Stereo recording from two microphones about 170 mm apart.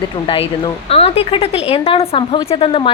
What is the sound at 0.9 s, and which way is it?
A woman's voice, 35° left (ahead or behind).